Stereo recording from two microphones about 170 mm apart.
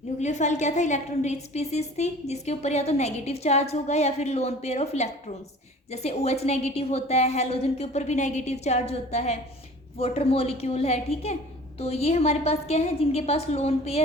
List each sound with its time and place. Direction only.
0.2 s a woman's voice: 45° left (ahead or behind)